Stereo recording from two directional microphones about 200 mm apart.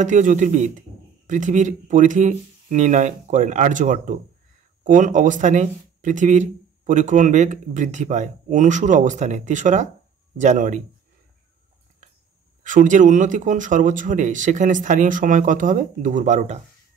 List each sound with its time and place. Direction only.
0.0 s speech: 40° right (ahead or behind)
12.6 s speech: 40° right (ahead or behind)